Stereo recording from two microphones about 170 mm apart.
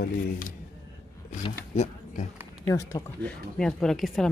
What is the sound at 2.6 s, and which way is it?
Speech, 20° left (ahead or behind).